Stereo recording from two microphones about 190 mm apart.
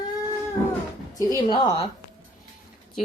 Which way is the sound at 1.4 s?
25° left (ahead or behind).